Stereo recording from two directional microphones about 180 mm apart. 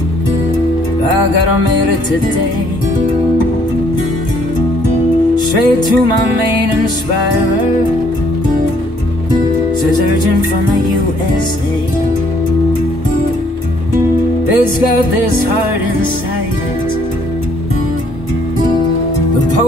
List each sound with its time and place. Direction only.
5.3 s music: 25° left (ahead or behind)